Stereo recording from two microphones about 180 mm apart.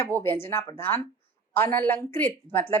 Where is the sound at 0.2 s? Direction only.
15° left (ahead or behind).